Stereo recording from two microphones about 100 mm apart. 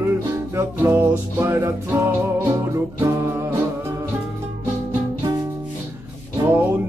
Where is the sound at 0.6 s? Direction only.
25° right (ahead or behind).